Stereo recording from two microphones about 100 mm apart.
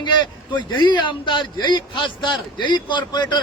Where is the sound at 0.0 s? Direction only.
50° left (ahead or behind).